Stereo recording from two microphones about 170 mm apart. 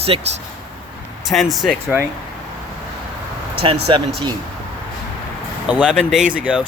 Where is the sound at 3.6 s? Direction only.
30° right (ahead or behind).